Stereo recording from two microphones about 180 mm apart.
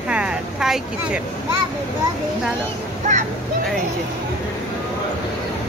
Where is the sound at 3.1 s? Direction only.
40° right (ahead or behind).